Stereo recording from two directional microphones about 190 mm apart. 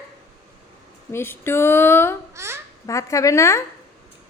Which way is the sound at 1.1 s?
10° left (ahead or behind).